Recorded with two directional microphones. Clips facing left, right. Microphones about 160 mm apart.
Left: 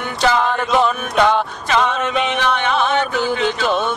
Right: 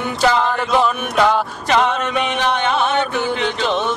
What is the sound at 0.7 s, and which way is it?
Mantra, 5° right (ahead or behind).